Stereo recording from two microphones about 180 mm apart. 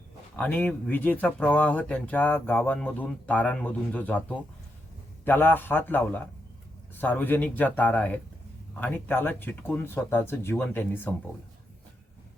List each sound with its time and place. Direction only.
0.3 s speech: 10° left (ahead or behind)